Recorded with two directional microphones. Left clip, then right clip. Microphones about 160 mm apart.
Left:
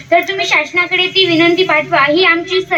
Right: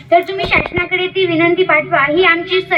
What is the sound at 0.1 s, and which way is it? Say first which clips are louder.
Speech: even; 10° left (ahead or behind).